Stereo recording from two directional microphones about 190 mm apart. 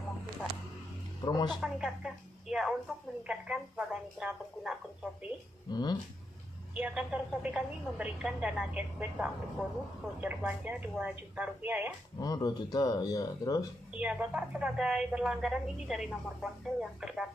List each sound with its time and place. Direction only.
1.2 s speech: 20° left (ahead or behind)
1.6 s a woman's voice: 5° right (ahead or behind)
5.7 s speech: 20° left (ahead or behind)
6.7 s a woman's voice: 5° right (ahead or behind)
12.2 s speech: 20° left (ahead or behind)
13.9 s a woman's voice: 5° right (ahead or behind)